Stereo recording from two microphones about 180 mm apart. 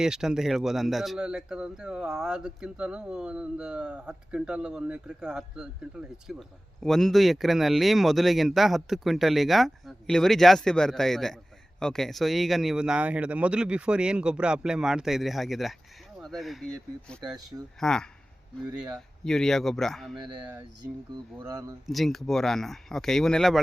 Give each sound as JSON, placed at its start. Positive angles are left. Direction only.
{"t": 0.0, "sound": "a man's voice", "side_deg": -5}
{"t": 21.3, "sound": "speech", "side_deg": -20}
{"t": 21.8, "sound": "a man's voice", "side_deg": 0}